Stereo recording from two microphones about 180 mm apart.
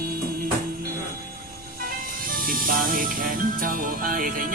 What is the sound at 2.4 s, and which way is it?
Music, 50° right (ahead or behind).